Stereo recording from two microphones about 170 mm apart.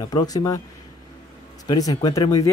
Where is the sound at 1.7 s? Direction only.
25° left (ahead or behind).